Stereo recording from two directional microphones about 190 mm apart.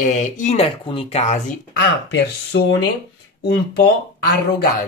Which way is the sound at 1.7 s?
60° left (ahead or behind).